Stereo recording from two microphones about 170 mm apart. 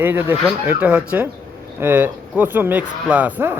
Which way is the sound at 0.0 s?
10° right (ahead or behind).